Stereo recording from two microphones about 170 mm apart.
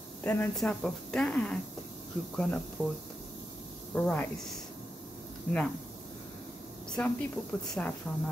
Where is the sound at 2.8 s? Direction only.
5° right (ahead or behind).